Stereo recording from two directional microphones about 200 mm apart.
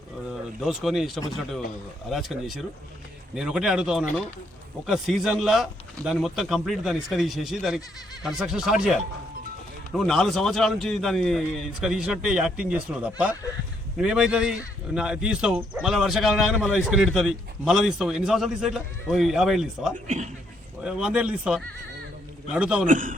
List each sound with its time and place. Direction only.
0.6 s speech: centre (ahead or behind)
20.1 s a man's voice: 35° right (ahead or behind)
20.8 s speech: 5° right (ahead or behind)
22.9 s a man's voice: 40° right (ahead or behind)